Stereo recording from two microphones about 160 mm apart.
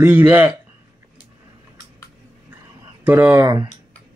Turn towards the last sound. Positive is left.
turn(degrees=-15)  # may be behind; listen again after turning